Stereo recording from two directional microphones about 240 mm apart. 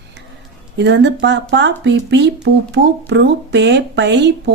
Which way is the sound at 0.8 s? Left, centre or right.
Right.